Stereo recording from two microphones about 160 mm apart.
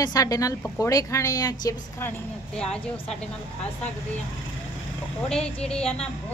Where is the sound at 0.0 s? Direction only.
20° left (ahead or behind); by 3.2 s 5° left (ahead or behind).